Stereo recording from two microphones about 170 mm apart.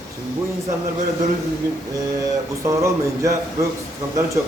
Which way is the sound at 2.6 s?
20° right (ahead or behind).